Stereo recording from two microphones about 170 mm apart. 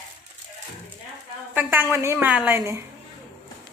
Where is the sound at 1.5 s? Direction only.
10° right (ahead or behind).